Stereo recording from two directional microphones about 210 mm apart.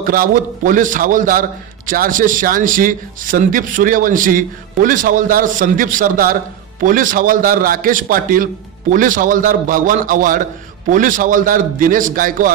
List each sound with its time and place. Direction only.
0.1 s a man's voice: 40° right (ahead or behind)